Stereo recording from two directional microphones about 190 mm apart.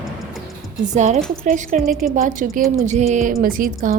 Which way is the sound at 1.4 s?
45° right (ahead or behind).